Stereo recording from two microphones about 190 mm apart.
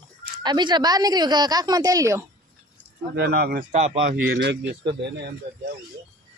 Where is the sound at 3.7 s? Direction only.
35° right (ahead or behind).